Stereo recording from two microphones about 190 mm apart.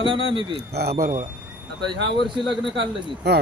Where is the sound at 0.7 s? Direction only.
50° right (ahead or behind).